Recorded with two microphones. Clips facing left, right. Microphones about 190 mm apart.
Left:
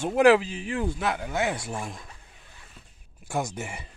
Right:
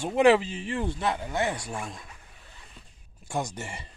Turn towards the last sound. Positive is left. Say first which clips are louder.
# left 2 dB
turn(degrees=5)  # may be behind; listen again after turning